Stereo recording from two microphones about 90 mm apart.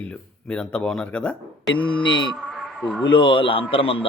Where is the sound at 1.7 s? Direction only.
65° left (ahead or behind).